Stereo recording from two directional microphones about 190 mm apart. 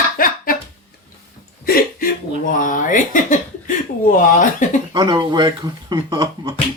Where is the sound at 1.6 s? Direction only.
50° left (ahead or behind).